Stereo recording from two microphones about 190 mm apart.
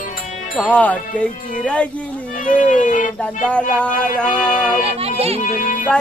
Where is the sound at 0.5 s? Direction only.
5° left (ahead or behind).